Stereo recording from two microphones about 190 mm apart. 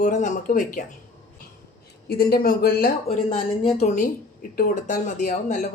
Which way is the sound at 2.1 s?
55° left (ahead or behind).